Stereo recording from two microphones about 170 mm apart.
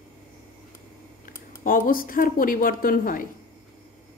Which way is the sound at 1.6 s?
55° left (ahead or behind).